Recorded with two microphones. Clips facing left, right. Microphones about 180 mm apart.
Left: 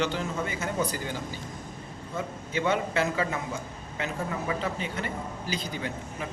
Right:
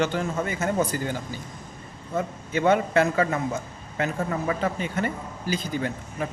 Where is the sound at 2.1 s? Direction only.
50° right (ahead or behind).